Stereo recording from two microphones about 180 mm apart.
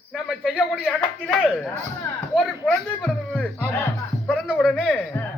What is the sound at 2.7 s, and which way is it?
Speech, 5° left (ahead or behind).